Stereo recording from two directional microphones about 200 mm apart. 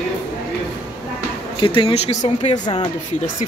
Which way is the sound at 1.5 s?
25° left (ahead or behind).